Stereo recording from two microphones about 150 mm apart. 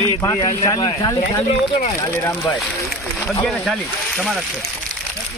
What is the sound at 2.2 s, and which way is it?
Speech, 10° left (ahead or behind).